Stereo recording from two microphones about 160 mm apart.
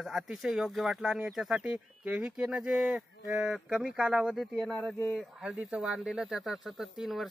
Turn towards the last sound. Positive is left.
turn(degrees=0)  # may be behind; listen again after turning